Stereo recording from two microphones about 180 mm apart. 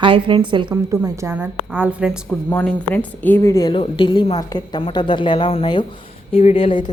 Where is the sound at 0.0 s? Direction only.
30° right (ahead or behind); by 2.2 s 5° right (ahead or behind).